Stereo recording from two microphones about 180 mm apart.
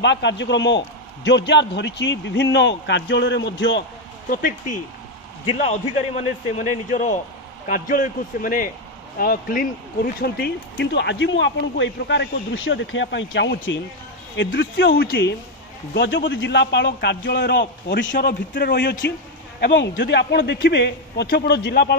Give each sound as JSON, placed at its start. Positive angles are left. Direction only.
{"t": 0.0, "sound": "speech", "side_deg": 80}
{"t": 4.3, "sound": "a man's voice", "side_deg": 50}
{"t": 5.4, "sound": "a man's voice", "side_deg": 40}
{"t": 15.9, "sound": "a man's voice", "side_deg": 85}